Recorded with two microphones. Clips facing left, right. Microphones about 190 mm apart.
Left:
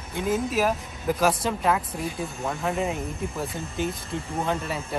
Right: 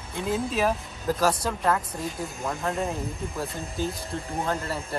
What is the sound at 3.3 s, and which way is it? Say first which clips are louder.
Speech: left 1 dB; centre (ahead or behind).